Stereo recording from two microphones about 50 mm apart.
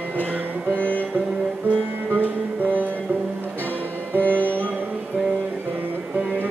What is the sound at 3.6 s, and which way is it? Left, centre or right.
Music, left.